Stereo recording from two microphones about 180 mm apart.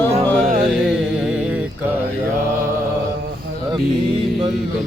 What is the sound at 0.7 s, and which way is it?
Music, centre (ahead or behind).